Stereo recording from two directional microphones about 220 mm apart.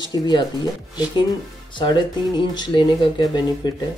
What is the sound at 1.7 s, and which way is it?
Speech, 20° left (ahead or behind).